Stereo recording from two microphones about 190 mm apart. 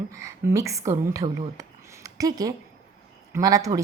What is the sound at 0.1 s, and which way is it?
A woman's voice, 15° right (ahead or behind).